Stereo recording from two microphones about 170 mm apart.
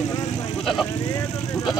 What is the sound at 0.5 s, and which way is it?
Speech, centre (ahead or behind).